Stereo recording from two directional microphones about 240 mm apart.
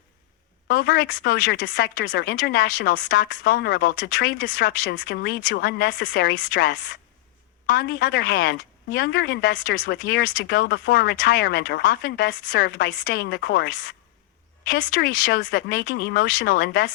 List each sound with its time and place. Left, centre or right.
0.7 s speech: left